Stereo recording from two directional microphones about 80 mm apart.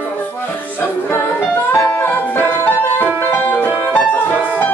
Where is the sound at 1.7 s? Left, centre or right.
Left.